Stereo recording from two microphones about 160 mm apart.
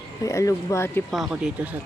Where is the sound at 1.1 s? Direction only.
Centre (ahead or behind).